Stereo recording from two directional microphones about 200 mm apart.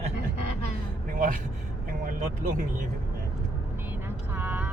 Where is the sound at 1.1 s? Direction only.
40° right (ahead or behind).